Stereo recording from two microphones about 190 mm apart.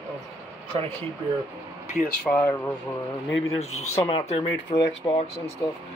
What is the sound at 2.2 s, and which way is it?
Speech, 5° left (ahead or behind).